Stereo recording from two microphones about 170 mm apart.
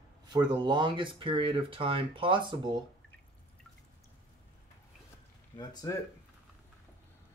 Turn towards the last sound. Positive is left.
turn(degrees=25)  # may be behind; listen again after turning